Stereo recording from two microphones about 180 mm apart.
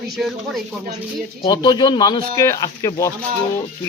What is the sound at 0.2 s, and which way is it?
Speech, centre (ahead or behind).